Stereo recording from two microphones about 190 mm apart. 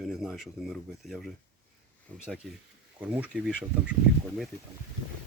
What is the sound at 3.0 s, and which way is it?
Speech, 5° right (ahead or behind).